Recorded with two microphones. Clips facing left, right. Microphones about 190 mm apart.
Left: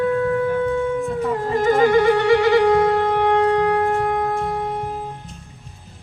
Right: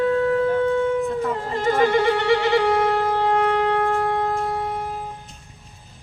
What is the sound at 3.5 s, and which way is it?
Shofar, 25° right (ahead or behind).